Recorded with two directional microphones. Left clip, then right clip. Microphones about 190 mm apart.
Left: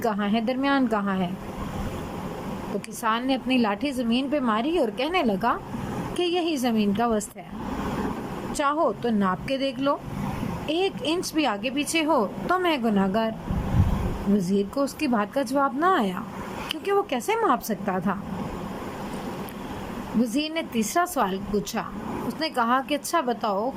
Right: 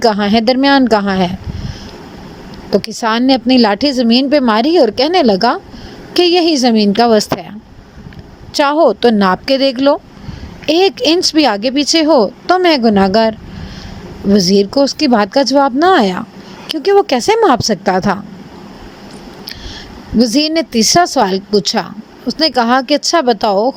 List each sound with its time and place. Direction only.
0.0 s a woman's voice: 45° right (ahead or behind)
3.0 s a woman's voice: 45° right (ahead or behind)
8.5 s a woman's voice: 45° right (ahead or behind)
14.3 s a woman's voice: 40° right (ahead or behind)
20.1 s a woman's voice: 40° right (ahead or behind)